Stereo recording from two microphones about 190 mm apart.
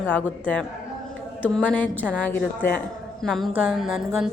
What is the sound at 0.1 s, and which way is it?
A woman's voice, 10° left (ahead or behind).